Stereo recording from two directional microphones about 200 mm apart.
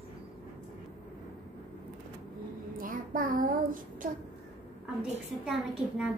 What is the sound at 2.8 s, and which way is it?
Child singing, 45° right (ahead or behind).